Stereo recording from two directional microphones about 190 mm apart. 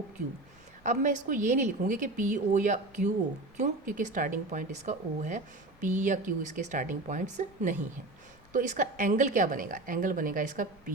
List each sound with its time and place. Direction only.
0.9 s a woman's voice: 40° right (ahead or behind)